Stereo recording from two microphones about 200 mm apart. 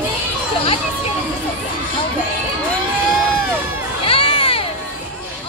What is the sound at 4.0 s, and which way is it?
Crowd, 25° left (ahead or behind).